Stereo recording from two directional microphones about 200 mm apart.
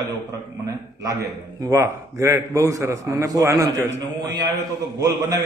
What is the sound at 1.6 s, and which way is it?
A man's voice, 15° right (ahead or behind).